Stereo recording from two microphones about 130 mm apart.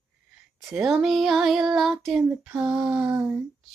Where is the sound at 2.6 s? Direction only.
10° right (ahead or behind).